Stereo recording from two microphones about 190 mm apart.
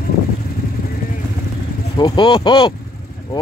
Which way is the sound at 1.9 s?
25° left (ahead or behind).